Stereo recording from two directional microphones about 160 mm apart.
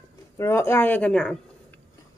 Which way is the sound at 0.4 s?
15° left (ahead or behind).